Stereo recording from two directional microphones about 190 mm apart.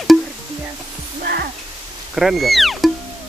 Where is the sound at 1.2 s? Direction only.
55° right (ahead or behind).